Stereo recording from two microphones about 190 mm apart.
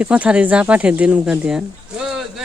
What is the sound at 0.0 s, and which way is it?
Speech, 5° right (ahead or behind).